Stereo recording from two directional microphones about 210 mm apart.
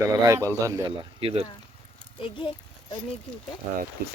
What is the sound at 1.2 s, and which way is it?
Speech, 25° right (ahead or behind).